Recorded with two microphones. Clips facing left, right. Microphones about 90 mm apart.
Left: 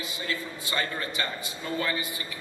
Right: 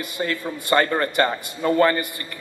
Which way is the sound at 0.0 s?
55° right (ahead or behind).